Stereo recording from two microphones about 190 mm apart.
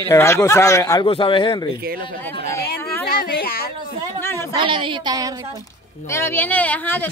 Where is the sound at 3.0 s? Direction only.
50° left (ahead or behind).